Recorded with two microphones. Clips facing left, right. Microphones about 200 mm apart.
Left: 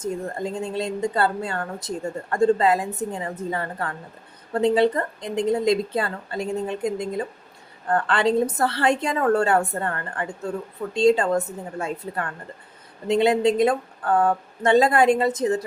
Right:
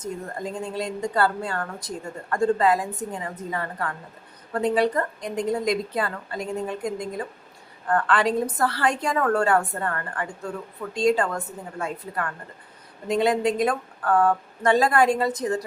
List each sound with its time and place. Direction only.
0.6 s a woman's voice: 25° left (ahead or behind)